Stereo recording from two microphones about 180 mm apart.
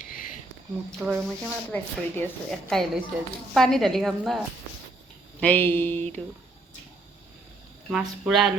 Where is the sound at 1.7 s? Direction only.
10° left (ahead or behind).